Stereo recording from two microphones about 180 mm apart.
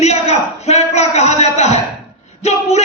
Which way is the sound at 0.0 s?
35° left (ahead or behind).